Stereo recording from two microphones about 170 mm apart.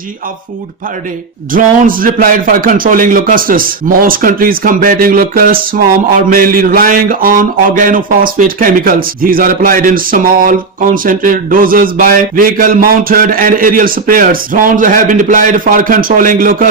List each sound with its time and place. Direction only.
1.5 s speech: 55° right (ahead or behind)